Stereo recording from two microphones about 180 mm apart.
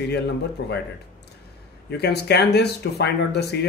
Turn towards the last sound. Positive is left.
turn(degrees=65)  # may be behind; listen again after turning